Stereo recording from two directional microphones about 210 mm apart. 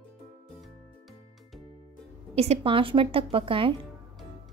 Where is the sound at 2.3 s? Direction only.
30° right (ahead or behind).